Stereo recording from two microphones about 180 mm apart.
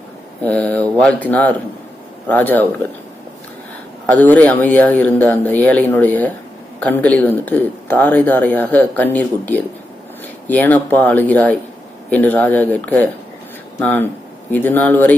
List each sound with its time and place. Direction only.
0.4 s speech: 5° left (ahead or behind)
4.0 s speech: 10° left (ahead or behind)